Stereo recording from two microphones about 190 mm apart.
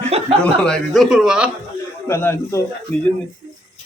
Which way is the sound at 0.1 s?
35° right (ahead or behind).